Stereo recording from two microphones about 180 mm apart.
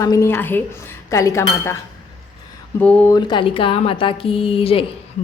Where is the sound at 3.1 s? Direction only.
25° left (ahead or behind).